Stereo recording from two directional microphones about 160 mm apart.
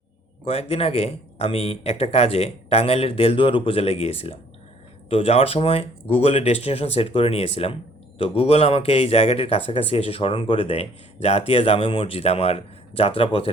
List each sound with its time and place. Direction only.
0.4 s speech: 40° left (ahead or behind)